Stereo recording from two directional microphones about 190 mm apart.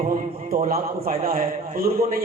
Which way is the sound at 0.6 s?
50° right (ahead or behind).